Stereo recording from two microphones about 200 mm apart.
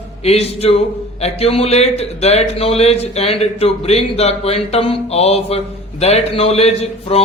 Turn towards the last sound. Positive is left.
turn(degrees=30)  # may be behind; listen again after turning